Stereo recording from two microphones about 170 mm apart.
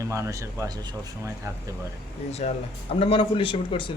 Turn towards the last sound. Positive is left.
turn(degrees=30)  # may be behind; listen again after turning